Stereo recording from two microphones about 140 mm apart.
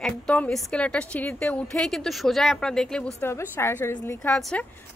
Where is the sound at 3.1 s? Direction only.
15° left (ahead or behind).